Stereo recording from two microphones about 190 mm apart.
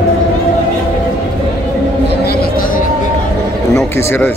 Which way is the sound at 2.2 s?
50° left (ahead or behind).